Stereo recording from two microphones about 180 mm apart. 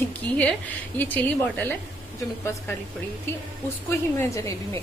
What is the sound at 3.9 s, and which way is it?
Speech, 15° left (ahead or behind).